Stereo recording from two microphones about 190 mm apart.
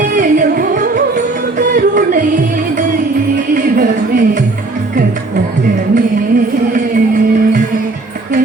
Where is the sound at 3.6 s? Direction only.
50° right (ahead or behind).